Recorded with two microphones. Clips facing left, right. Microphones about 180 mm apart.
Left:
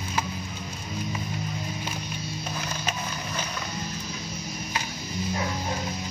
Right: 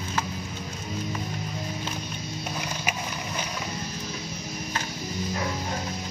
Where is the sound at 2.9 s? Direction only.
10° right (ahead or behind).